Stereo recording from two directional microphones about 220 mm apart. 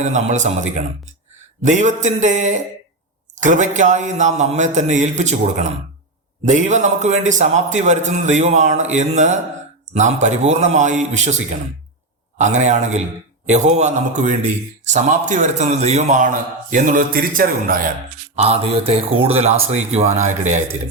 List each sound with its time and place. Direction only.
0.0 s a man's voice: 30° right (ahead or behind)
12.4 s a man's voice: 35° right (ahead or behind)
18.3 s a man's voice: 30° right (ahead or behind)